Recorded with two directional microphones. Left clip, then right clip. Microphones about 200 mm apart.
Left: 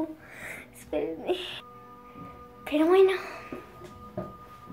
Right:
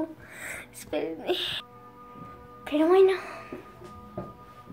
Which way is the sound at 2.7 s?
Centre (ahead or behind).